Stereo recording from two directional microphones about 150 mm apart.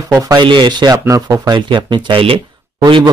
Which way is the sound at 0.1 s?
25° right (ahead or behind).